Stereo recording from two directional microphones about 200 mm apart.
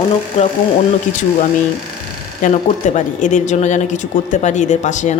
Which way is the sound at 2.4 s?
40° left (ahead or behind).